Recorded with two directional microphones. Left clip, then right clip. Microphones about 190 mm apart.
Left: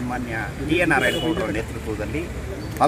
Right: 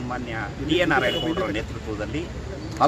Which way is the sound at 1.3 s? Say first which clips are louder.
Left 2 dB; 15° right (ahead or behind).